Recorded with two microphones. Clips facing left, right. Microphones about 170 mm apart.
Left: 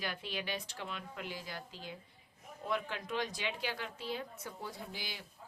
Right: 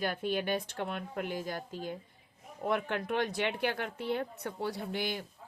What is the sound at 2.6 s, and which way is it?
Speech, 60° right (ahead or behind).